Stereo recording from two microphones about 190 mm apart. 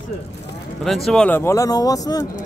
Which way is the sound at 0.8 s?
Centre (ahead or behind).